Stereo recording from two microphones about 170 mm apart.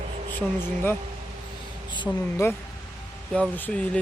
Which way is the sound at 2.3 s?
15° left (ahead or behind).